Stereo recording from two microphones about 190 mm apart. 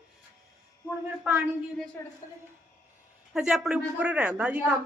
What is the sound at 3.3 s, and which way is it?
Speech, 5° right (ahead or behind).